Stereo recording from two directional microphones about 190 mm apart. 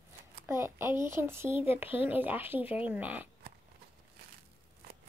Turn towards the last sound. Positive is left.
turn(degrees=-10)  # may be behind; listen again after turning